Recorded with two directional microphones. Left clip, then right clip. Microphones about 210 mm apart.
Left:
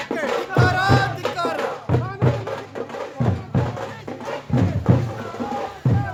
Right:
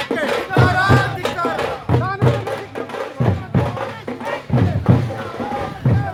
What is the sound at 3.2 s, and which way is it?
Music, 40° right (ahead or behind).